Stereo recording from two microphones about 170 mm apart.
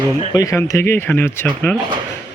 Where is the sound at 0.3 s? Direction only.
20° left (ahead or behind).